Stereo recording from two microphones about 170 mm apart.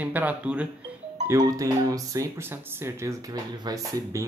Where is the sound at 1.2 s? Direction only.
20° right (ahead or behind).